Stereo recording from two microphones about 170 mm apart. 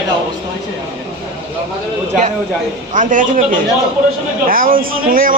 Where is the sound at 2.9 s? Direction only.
50° right (ahead or behind).